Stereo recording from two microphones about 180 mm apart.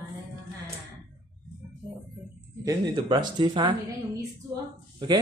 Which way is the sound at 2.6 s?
20° right (ahead or behind).